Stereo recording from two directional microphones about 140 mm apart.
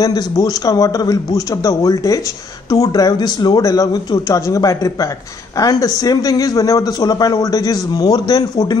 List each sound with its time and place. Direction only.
0.0 s a man's voice: 25° left (ahead or behind)